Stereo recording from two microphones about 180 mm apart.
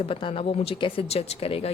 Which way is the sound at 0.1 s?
30° left (ahead or behind).